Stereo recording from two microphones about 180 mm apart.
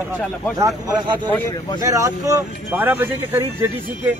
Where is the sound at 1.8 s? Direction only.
20° right (ahead or behind).